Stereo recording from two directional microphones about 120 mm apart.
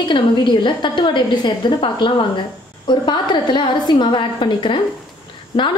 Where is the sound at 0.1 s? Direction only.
40° left (ahead or behind).